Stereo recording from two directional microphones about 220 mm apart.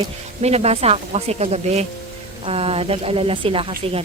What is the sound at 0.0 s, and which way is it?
Speech, 30° right (ahead or behind).